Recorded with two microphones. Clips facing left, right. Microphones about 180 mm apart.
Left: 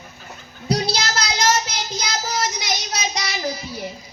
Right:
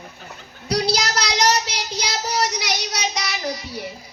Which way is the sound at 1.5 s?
70° right (ahead or behind).